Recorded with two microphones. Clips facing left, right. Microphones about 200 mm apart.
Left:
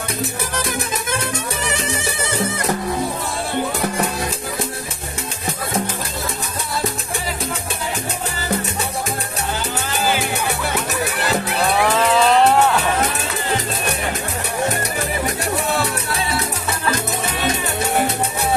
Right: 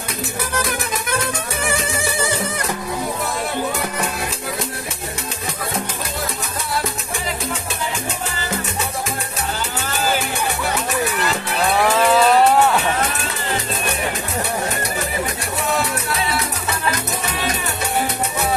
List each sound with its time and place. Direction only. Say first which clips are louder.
11.8 s music: right 2 dB; 5° right (ahead or behind)